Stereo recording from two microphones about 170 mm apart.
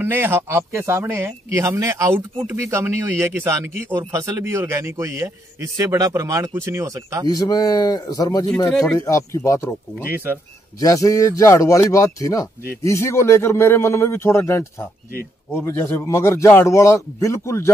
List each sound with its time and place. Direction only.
0.0 s speech: 10° right (ahead or behind)
7.2 s a man's voice: 25° left (ahead or behind)
10.0 s speech: 15° right (ahead or behind)
10.8 s a man's voice: 20° left (ahead or behind)